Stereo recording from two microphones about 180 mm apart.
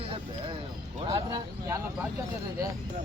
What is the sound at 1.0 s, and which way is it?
Speech, 20° right (ahead or behind).